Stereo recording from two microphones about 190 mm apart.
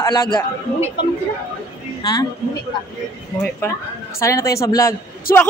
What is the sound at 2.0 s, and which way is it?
Speech, 20° left (ahead or behind).